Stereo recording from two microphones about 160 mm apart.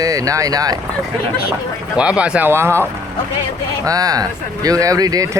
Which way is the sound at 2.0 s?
5° right (ahead or behind).